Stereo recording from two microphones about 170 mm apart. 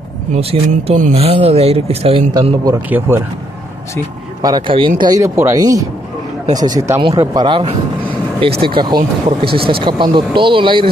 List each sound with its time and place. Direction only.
0.3 s speech: 35° right (ahead or behind)
2.6 s speech: 15° right (ahead or behind)
4.4 s speech: 25° right (ahead or behind)